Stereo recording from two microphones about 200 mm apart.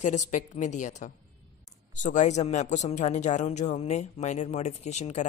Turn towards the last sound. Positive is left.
turn(degrees=35)  # may be behind; listen again after turning